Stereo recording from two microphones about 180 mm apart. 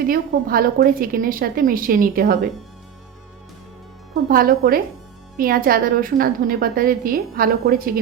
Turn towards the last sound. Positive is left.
turn(degrees=-55)  # may be behind; listen again after turning